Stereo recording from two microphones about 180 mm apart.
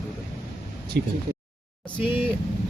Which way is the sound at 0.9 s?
65° right (ahead or behind).